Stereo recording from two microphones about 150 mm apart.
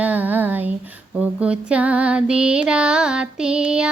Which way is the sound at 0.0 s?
10° right (ahead or behind).